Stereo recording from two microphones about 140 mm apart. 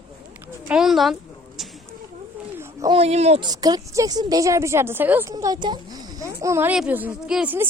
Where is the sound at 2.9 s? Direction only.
45° right (ahead or behind).